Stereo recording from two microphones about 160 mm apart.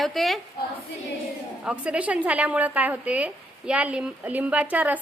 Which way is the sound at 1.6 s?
5° right (ahead or behind).